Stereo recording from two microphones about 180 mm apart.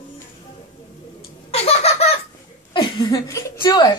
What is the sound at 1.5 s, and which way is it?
Laughter, 35° left (ahead or behind).